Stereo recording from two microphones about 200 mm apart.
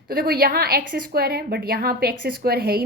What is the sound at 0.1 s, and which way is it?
A woman's voice, 50° right (ahead or behind).